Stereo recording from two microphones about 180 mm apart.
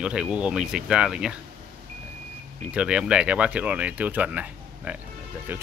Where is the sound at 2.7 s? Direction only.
5° right (ahead or behind).